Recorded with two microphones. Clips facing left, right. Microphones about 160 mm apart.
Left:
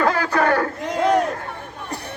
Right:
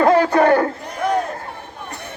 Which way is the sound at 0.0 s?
25° right (ahead or behind).